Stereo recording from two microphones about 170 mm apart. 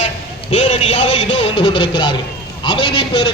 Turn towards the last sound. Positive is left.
turn(degrees=30)  # may be behind; listen again after turning